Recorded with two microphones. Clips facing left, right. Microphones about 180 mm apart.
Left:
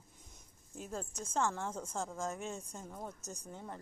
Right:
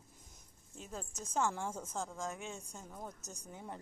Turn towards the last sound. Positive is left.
turn(degrees=-10)  # may be behind; listen again after turning